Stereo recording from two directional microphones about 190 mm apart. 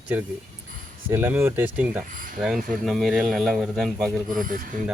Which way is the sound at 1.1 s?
10° right (ahead or behind).